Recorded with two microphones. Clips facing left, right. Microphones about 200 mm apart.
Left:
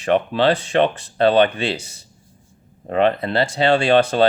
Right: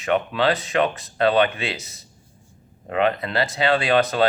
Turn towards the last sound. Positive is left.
turn(degrees=30)  # may be behind; listen again after turning